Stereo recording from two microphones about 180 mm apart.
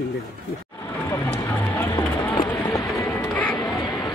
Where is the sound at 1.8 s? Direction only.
15° left (ahead or behind).